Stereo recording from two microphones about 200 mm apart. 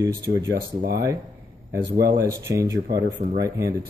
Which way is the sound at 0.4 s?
55° right (ahead or behind).